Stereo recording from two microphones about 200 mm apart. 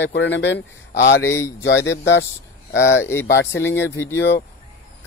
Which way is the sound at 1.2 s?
15° left (ahead or behind).